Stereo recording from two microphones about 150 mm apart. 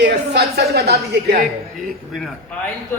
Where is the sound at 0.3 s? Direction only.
90° right.